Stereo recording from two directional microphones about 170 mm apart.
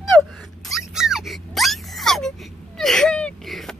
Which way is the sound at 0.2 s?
Centre (ahead or behind).